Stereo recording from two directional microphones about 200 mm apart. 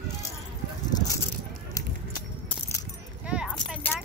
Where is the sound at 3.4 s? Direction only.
5° left (ahead or behind).